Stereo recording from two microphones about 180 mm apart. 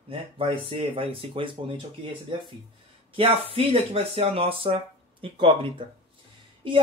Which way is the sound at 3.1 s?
30° right (ahead or behind).